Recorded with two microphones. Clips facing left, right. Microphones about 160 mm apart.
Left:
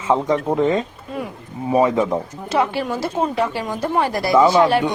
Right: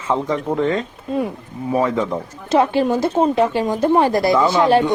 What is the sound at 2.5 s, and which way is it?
Speech, 25° right (ahead or behind).